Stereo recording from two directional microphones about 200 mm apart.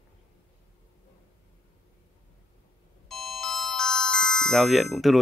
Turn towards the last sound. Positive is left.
turn(degrees=0)  # may be behind; listen again after turning